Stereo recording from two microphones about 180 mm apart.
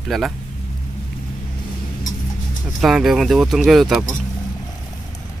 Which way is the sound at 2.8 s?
5° right (ahead or behind).